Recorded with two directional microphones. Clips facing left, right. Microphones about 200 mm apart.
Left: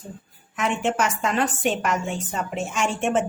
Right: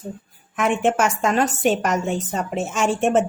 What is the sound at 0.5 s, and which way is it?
A woman's voice, 55° right (ahead or behind).